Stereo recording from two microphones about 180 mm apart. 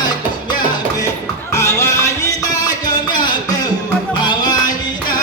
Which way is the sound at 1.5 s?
15° left (ahead or behind).